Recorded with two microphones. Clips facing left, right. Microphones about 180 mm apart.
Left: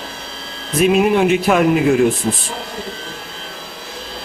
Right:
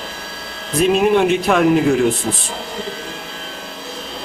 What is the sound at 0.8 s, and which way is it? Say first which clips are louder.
Speech: even; 5° left (ahead or behind).